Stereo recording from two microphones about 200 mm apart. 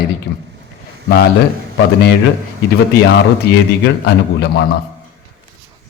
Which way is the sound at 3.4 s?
55° left (ahead or behind).